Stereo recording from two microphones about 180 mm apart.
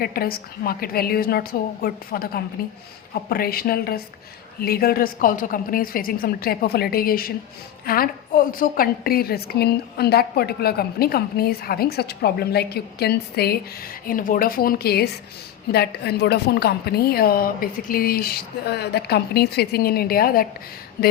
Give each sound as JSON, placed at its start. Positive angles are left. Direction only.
{"t": 0.0, "sound": "a woman's voice", "side_deg": 55}